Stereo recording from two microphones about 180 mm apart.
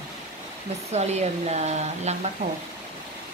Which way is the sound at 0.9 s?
40° right (ahead or behind).